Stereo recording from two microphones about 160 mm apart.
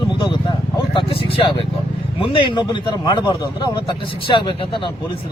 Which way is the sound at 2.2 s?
30° left (ahead or behind).